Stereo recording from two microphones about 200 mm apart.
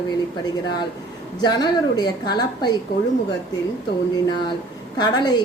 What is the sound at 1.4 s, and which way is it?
Speech, 20° left (ahead or behind).